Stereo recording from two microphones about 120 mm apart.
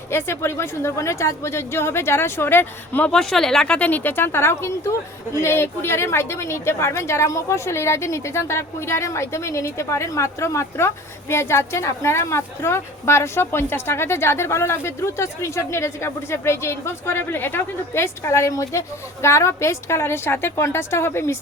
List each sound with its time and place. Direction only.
0.1 s a woman's voice: 20° left (ahead or behind)